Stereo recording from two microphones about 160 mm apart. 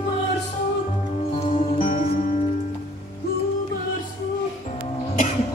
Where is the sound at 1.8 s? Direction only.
60° left (ahead or behind).